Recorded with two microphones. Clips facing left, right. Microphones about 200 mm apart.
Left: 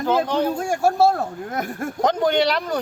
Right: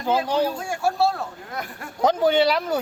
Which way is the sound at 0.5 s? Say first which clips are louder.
Left 5 dB; 45° left (ahead or behind).